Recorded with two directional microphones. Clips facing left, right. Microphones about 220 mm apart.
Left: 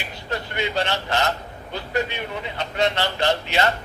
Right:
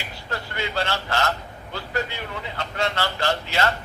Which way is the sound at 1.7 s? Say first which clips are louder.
Left 3 dB; 20° left (ahead or behind).